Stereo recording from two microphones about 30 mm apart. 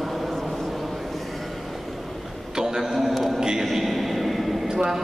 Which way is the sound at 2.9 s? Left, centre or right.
Centre.